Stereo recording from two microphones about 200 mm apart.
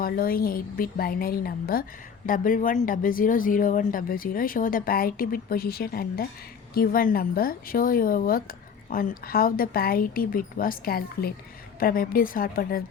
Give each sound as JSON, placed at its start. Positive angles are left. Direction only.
{"t": 0.0, "sound": "speech", "side_deg": 45}